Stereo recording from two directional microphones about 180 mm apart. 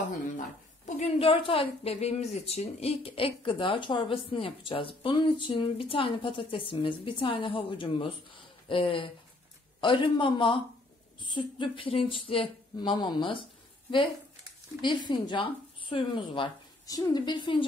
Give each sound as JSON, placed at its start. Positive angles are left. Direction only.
{"t": 0.4, "sound": "a woman's voice", "side_deg": 40}